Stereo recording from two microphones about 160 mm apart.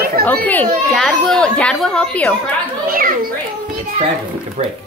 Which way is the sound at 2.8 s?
60° right (ahead or behind).